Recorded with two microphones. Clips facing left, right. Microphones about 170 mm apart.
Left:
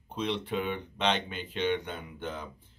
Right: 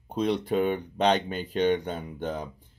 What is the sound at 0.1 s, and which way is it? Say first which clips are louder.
Speech: right 6 dB; 40° right (ahead or behind).